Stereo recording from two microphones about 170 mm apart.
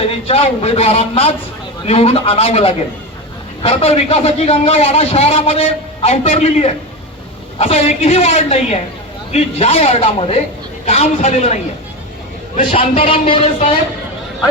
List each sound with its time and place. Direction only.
0.1 s a man's voice: 35° left (ahead or behind)